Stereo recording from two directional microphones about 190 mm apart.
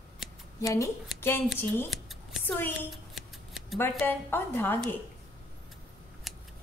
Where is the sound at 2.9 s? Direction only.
Centre (ahead or behind).